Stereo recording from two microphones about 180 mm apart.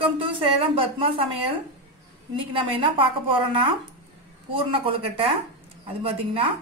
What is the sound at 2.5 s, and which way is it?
Speech, 30° right (ahead or behind).